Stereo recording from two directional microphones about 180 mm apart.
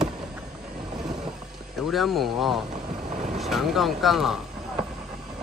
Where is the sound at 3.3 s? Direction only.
Centre (ahead or behind).